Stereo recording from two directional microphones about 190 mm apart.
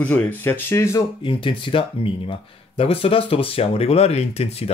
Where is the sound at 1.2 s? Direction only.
25° left (ahead or behind).